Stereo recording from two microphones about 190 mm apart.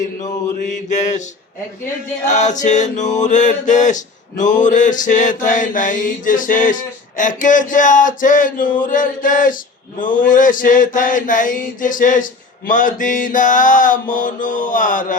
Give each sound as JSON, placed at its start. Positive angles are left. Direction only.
{"t": 0.6, "sound": "mantra", "side_deg": 40}